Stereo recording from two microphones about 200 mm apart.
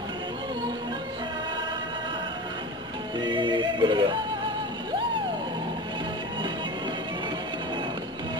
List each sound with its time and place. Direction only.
3.2 s music: 25° right (ahead or behind)